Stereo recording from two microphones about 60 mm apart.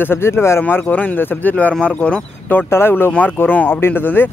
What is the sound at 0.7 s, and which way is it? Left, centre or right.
Speech, left.